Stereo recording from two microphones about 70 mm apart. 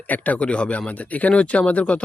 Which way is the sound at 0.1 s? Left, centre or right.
Centre.